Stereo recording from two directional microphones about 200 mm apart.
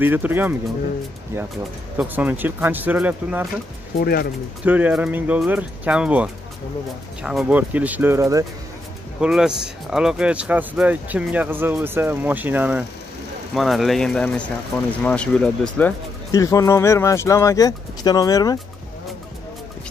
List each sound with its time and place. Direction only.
0.0 s speech: 10° right (ahead or behind)
2.0 s speech: 10° right (ahead or behind)
4.0 s speech: 50° left (ahead or behind)
4.6 s speech: 10° right (ahead or behind)
9.2 s speech: 5° right (ahead or behind)
16.3 s speech: 15° left (ahead or behind)